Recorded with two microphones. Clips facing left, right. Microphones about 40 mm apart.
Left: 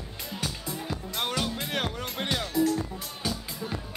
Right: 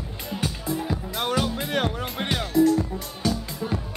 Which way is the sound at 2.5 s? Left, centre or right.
Centre.